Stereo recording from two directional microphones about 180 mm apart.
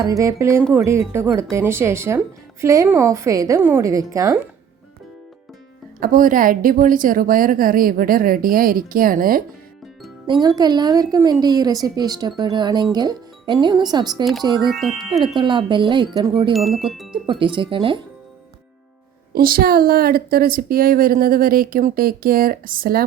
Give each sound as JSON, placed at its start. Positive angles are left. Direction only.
{"t": 0.0, "sound": "speech", "side_deg": -20}
{"t": 6.0, "sound": "a woman's voice", "side_deg": -50}
{"t": 10.4, "sound": "a woman's voice", "side_deg": -20}
{"t": 14.7, "sound": "speech", "side_deg": 0}
{"t": 15.4, "sound": "a woman's voice", "side_deg": -25}
{"t": 16.5, "sound": "speech", "side_deg": 0}
{"t": 17.2, "sound": "a woman's voice", "side_deg": -25}
{"t": 19.3, "sound": "a woman's voice", "side_deg": -55}